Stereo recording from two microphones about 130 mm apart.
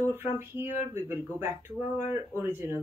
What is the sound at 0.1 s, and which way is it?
Speech, 15° right (ahead or behind).